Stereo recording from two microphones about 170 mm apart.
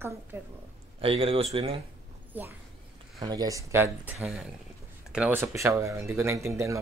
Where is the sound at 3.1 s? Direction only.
25° right (ahead or behind).